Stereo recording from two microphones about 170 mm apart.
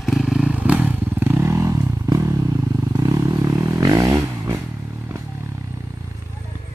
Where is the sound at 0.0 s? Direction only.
Centre (ahead or behind); by 2.3 s 20° right (ahead or behind).